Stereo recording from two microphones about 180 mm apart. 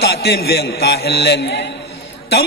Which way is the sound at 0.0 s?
65° left (ahead or behind).